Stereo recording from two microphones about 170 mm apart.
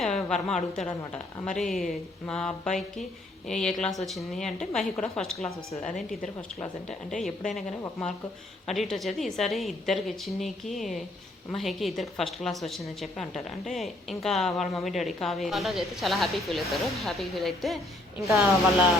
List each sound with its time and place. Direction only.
0.0 s a woman's voice: 5° left (ahead or behind)
7.2 s a woman's voice: centre (ahead or behind)